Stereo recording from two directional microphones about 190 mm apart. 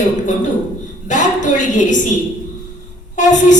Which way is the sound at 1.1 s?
40° left (ahead or behind).